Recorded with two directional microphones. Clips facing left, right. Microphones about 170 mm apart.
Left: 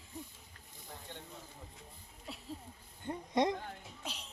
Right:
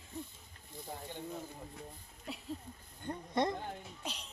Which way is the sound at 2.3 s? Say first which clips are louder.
Right 4 dB; centre (ahead or behind).